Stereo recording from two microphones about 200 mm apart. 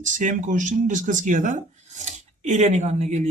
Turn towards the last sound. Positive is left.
turn(degrees=-35)  # may be behind; listen again after turning